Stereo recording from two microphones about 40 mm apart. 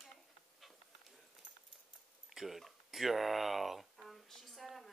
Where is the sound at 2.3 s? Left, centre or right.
Centre.